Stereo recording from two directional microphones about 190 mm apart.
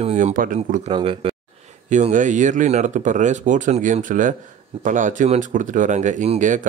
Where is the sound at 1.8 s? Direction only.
40° right (ahead or behind).